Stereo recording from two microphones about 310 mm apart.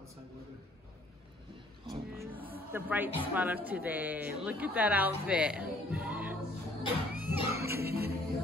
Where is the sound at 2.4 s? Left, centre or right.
Centre.